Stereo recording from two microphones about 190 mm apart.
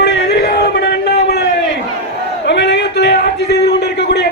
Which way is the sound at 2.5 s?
65° left (ahead or behind).